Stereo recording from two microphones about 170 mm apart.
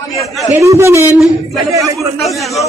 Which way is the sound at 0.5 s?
15° right (ahead or behind).